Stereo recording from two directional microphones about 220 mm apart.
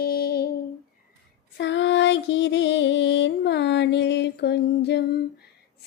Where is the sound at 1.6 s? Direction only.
55° left (ahead or behind).